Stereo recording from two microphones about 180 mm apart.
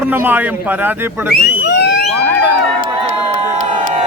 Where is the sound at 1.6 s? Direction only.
70° left (ahead or behind).